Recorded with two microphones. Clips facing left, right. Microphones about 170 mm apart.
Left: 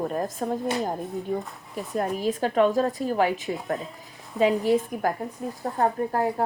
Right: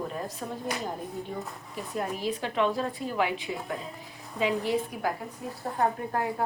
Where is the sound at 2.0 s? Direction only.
45° left (ahead or behind).